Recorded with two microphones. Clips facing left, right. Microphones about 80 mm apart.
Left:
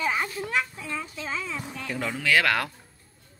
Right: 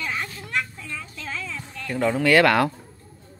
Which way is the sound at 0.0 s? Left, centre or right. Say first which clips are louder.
Left 3 dB; centre.